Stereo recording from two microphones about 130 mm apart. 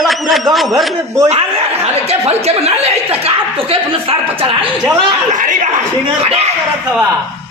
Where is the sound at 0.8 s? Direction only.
Centre (ahead or behind).